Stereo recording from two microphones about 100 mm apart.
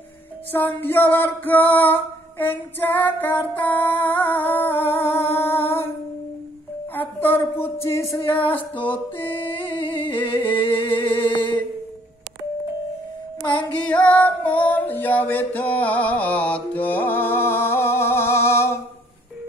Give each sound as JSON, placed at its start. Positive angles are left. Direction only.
{"t": 0.5, "sound": "music", "side_deg": 20}
{"t": 7.0, "sound": "a woman's voice", "side_deg": 20}
{"t": 7.8, "sound": "music", "side_deg": 30}
{"t": 8.2, "sound": "humming", "side_deg": 60}
{"t": 9.1, "sound": "music", "side_deg": 20}
{"t": 9.6, "sound": "humming", "side_deg": 60}
{"t": 10.6, "sound": "music", "side_deg": 60}
{"t": 11.1, "sound": "a sound", "side_deg": 55}
{"t": 13.7, "sound": "music", "side_deg": 15}